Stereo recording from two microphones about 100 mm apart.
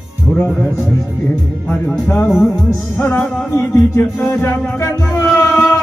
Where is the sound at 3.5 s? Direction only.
25° left (ahead or behind).